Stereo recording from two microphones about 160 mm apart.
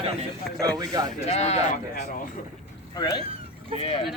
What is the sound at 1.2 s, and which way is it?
Speech, 40° left (ahead or behind).